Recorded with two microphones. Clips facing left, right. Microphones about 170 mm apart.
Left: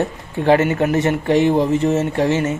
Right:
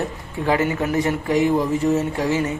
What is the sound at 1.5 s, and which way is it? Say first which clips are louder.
Speech: left 3 dB; 25° left (ahead or behind).